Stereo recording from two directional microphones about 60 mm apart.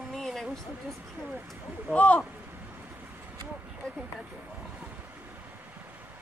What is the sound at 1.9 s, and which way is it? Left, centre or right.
Speech, left.